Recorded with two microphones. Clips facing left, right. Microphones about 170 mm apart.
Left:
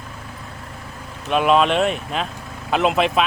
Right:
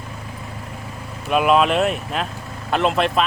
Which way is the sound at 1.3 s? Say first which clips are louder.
Even; 5° right (ahead or behind).